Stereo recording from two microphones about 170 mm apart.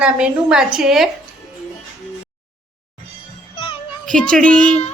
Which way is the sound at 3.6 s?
30° left (ahead or behind).